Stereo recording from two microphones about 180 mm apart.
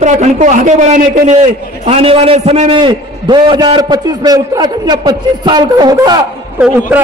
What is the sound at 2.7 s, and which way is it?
A man's voice, 25° right (ahead or behind).